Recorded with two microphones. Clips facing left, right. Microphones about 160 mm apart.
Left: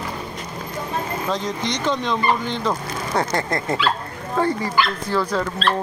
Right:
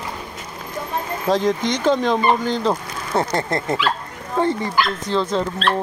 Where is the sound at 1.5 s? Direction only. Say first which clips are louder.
Right 5 dB; 50° right (ahead or behind).